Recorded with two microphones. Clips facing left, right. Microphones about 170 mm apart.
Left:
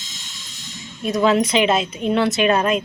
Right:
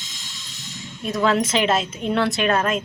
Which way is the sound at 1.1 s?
15° left (ahead or behind).